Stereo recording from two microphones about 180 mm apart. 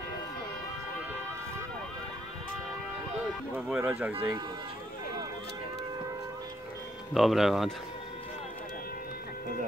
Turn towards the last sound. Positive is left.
turn(degrees=0)  # may be behind; listen again after turning